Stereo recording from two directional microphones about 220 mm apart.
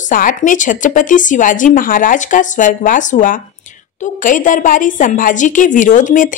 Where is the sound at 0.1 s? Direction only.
40° left (ahead or behind).